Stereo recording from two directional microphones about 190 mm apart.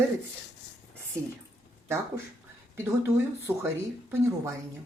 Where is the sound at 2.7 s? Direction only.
15° right (ahead or behind).